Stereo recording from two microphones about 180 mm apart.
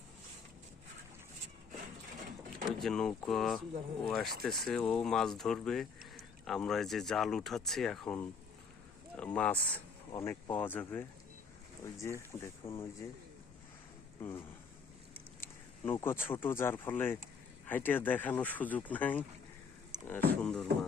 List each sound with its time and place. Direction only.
2.6 s speech: centre (ahead or behind)
10.1 s speech: 15° left (ahead or behind)
12.0 s speech: 10° left (ahead or behind)
14.2 s speech: 10° left (ahead or behind)